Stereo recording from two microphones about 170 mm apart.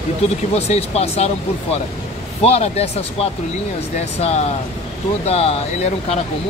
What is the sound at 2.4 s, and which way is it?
Speech, 35° left (ahead or behind).